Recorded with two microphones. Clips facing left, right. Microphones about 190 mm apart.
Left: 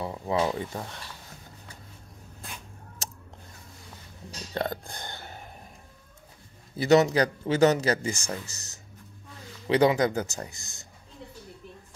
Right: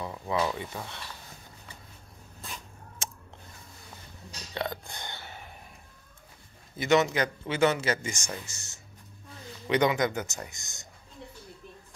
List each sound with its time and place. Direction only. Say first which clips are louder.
0.0 s speech: left 3 dB; 30° left (ahead or behind)
3.0 s scissors: even; 40° left (ahead or behind)
4.6 s a sound: left 3 dB; 50° left (ahead or behind)
6.8 s speech: left 4 dB; 35° left (ahead or behind)